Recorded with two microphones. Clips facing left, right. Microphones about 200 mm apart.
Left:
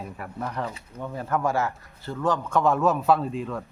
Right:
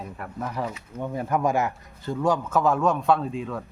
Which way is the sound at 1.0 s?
15° right (ahead or behind).